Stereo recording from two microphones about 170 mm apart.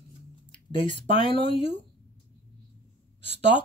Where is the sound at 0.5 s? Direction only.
30° left (ahead or behind).